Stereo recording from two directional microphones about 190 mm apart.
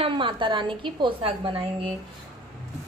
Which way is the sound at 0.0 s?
25° right (ahead or behind).